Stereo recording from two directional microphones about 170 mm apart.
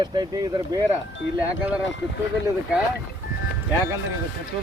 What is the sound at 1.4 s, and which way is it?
Speech, 10° right (ahead or behind).